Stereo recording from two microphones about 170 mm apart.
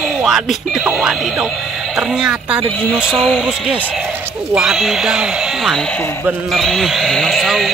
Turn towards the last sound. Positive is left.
turn(degrees=0)  # may be behind; listen again after turning